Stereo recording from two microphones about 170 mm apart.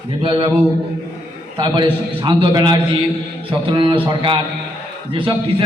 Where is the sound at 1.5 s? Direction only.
25° right (ahead or behind).